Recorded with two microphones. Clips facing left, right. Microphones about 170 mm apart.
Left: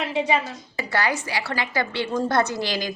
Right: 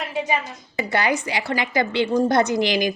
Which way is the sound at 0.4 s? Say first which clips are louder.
Right 3 dB; 20° right (ahead or behind).